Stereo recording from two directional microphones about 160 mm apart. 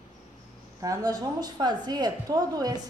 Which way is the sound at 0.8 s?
25° right (ahead or behind).